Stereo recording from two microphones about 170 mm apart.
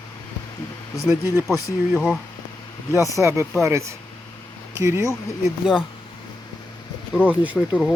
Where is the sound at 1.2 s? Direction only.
15° right (ahead or behind).